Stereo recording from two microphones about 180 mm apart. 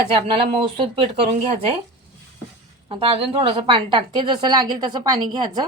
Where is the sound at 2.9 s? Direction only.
30° right (ahead or behind).